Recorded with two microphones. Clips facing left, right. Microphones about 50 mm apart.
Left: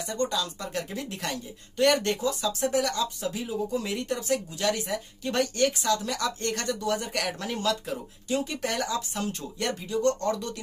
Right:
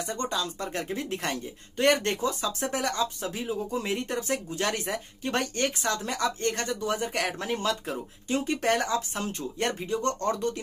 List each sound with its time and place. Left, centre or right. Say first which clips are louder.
0.0 s speech: left 1 dB; right